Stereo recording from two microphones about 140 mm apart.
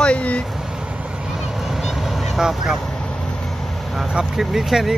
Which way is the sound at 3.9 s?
5° right (ahead or behind).